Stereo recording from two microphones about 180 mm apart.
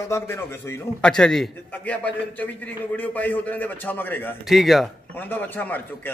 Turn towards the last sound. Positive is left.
turn(degrees=10)  # may be behind; listen again after turning